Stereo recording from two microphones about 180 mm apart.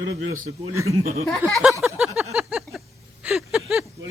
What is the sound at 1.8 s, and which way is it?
Speech, centre (ahead or behind).